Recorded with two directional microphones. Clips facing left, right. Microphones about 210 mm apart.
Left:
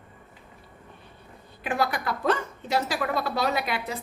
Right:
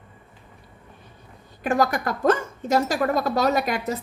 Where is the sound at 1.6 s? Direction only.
45° right (ahead or behind).